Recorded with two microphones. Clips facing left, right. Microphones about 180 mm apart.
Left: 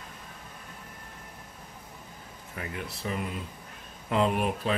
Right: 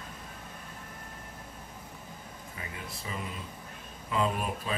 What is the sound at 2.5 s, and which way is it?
Speech, 60° left (ahead or behind).